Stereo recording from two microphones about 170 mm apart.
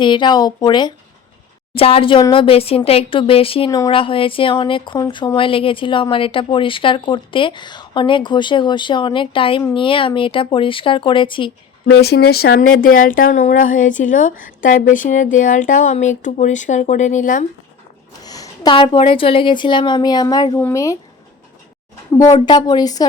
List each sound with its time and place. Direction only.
0.0 s speech: 25° left (ahead or behind)
11.9 s a woman's voice: 75° left (ahead or behind); by 17.4 s 50° left (ahead or behind)
18.2 s a woman's voice: 20° left (ahead or behind)
22.1 s speech: 20° left (ahead or behind)